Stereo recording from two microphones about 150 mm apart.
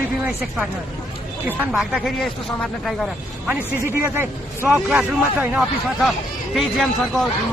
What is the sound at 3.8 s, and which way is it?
Speech, 15° right (ahead or behind).